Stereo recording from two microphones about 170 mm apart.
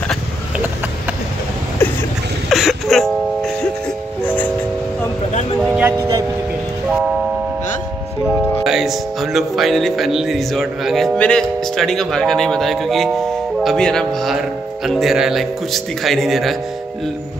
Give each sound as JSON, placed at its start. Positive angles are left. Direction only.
{"t": 2.5, "sound": "music", "side_deg": 0}
{"t": 5.6, "sound": "music", "side_deg": -10}
{"t": 8.4, "sound": "speech", "side_deg": 0}